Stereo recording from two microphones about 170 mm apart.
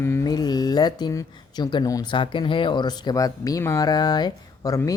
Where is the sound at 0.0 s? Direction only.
15° left (ahead or behind).